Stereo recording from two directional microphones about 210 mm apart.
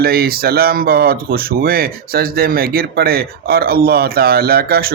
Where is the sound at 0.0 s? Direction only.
45° right (ahead or behind).